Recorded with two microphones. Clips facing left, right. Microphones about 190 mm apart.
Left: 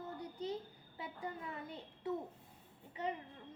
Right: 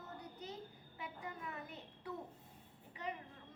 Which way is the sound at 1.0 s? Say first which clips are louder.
Left 3 dB; 30° left (ahead or behind).